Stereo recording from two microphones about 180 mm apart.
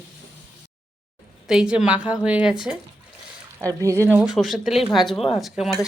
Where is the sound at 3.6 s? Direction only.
15° right (ahead or behind).